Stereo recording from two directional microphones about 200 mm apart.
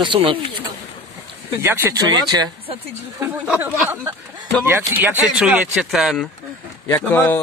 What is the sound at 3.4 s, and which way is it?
Speech, 5° right (ahead or behind).